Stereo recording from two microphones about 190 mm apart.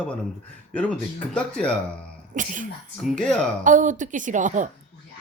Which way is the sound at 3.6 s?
40° right (ahead or behind).